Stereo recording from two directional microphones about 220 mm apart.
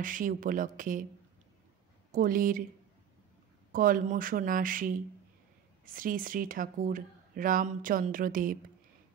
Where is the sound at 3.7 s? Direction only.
40° right (ahead or behind).